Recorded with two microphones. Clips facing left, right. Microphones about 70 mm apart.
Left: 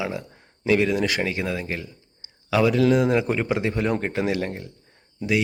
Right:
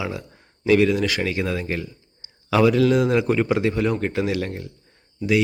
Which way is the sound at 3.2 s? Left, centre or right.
Centre.